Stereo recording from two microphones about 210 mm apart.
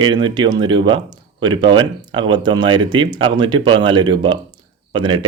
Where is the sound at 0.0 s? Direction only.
20° right (ahead or behind).